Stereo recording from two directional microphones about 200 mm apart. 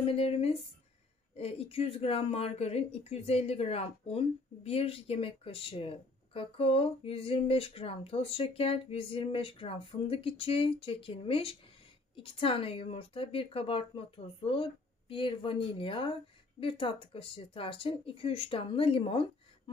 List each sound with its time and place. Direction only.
0.0 s speech: 30° left (ahead or behind)